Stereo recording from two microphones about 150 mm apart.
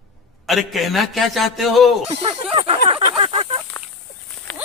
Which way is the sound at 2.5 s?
40° right (ahead or behind).